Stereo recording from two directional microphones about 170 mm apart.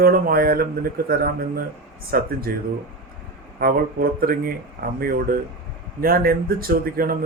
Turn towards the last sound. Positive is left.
turn(degrees=-60)  # may be behind; listen again after turning